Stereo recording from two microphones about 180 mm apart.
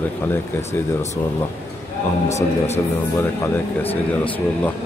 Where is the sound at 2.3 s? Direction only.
35° left (ahead or behind).